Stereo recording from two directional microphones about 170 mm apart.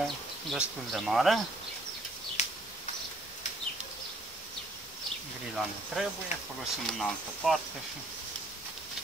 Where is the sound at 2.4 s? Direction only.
40° left (ahead or behind).